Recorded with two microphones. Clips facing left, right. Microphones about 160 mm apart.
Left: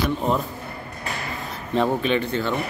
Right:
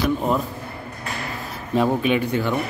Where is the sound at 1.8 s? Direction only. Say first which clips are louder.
Right 2 dB; 10° right (ahead or behind).